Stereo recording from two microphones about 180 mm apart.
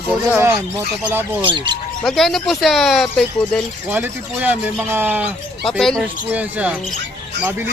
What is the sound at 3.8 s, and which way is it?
Speech, 10° right (ahead or behind).